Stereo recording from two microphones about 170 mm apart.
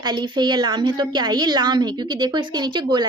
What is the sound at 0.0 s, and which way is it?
A woman's voice, 25° right (ahead or behind).